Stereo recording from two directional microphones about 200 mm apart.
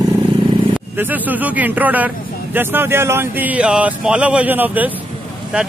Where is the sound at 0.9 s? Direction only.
10° right (ahead or behind).